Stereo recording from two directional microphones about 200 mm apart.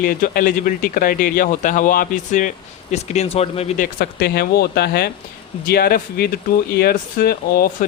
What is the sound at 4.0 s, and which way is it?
Speech, 50° left (ahead or behind).